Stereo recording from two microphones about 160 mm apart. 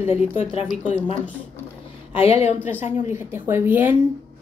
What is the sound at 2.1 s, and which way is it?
Speech, 40° left (ahead or behind).